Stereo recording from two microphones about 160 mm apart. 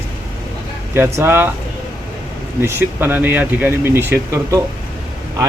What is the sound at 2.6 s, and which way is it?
Speech, 15° right (ahead or behind).